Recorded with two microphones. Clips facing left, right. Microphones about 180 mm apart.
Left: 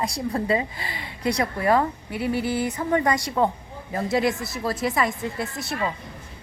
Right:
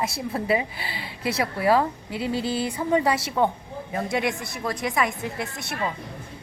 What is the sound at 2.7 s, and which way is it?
A woman's voice, 10° right (ahead or behind).